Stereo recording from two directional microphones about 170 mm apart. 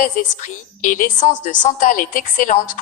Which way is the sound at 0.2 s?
50° left (ahead or behind).